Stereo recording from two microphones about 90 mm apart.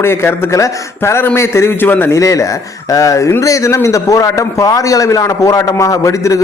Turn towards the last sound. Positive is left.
turn(degrees=35)  # may be behind; listen again after turning